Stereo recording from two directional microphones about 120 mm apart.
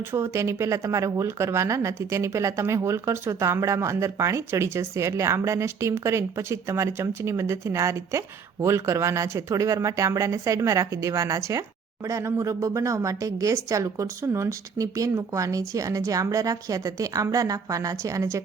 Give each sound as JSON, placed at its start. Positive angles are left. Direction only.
{"t": 0.0, "sound": "speech", "side_deg": -20}